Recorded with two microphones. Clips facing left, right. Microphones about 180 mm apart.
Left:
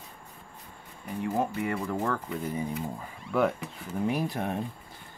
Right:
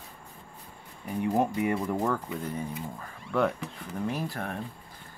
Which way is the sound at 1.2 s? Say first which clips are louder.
Right 3 dB; 15° right (ahead or behind).